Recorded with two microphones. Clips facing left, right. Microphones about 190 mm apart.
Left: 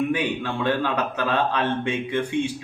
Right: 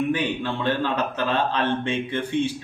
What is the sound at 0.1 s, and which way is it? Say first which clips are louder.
A man's voice: even; 10° left (ahead or behind).